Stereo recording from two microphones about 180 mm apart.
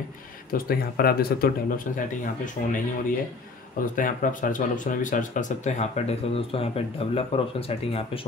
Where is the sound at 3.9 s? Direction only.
50° left (ahead or behind).